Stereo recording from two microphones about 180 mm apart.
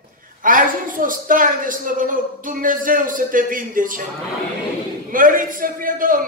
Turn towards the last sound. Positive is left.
turn(degrees=-50)  # may be behind; listen again after turning